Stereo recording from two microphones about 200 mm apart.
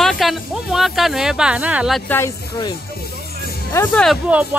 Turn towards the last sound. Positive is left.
turn(degrees=-5)  # may be behind; listen again after turning